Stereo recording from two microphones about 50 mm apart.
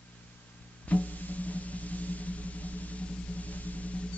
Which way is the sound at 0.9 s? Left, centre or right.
Left.